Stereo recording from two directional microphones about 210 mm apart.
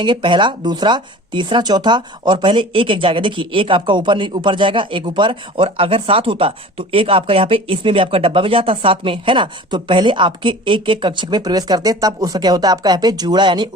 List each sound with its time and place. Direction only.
0.0 s speech: 25° right (ahead or behind)